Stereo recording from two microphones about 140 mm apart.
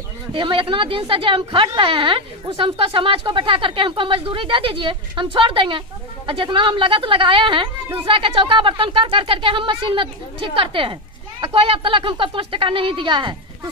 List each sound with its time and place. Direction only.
0.3 s speech: 40° right (ahead or behind)